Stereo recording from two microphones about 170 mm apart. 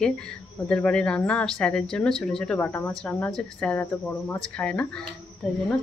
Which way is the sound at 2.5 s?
15° left (ahead or behind).